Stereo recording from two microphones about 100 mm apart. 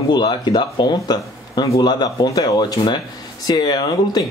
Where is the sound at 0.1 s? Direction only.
50° left (ahead or behind).